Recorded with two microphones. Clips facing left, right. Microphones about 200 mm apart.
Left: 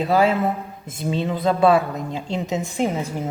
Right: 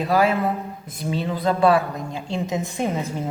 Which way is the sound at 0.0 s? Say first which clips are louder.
Left 1 dB; 25° left (ahead or behind).